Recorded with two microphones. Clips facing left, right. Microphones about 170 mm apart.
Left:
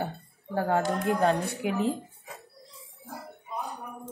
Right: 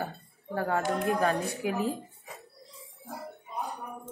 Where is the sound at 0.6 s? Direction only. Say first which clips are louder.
Left 2 dB; 30° left (ahead or behind).